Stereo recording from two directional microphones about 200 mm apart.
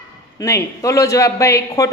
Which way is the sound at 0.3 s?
15° left (ahead or behind).